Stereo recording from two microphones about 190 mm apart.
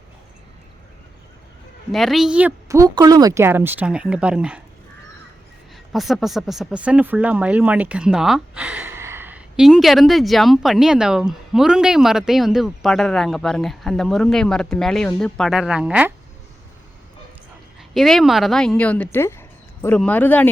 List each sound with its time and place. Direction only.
1.9 s speech: centre (ahead or behind)
2.6 s speech: 15° right (ahead or behind)
5.9 s speech: centre (ahead or behind)
17.7 s a woman's voice: centre (ahead or behind)